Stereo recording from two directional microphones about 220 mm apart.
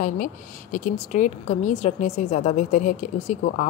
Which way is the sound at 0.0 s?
35° left (ahead or behind).